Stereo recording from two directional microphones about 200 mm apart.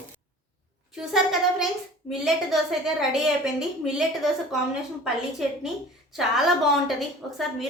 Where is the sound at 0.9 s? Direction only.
Centre (ahead or behind).